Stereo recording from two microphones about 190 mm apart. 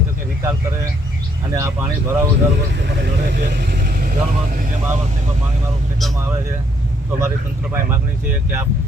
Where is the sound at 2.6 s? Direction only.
65° right (ahead or behind).